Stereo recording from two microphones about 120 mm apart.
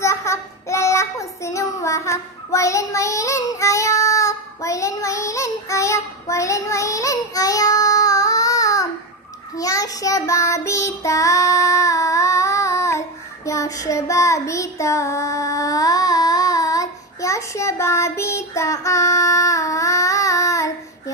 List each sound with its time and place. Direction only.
0.0 s child singing: 25° left (ahead or behind)